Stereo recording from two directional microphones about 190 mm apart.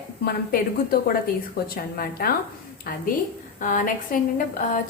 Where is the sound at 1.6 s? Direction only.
50° left (ahead or behind).